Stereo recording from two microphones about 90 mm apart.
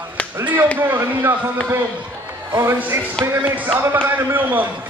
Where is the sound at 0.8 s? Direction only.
25° right (ahead or behind).